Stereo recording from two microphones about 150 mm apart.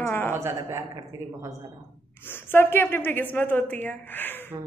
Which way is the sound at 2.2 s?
15° left (ahead or behind).